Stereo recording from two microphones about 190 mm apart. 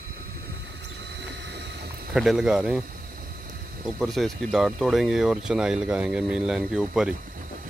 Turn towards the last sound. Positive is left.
turn(degrees=-5)  # may be behind; listen again after turning